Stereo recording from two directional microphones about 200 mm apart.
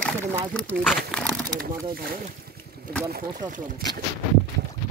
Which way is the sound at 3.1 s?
45° right (ahead or behind).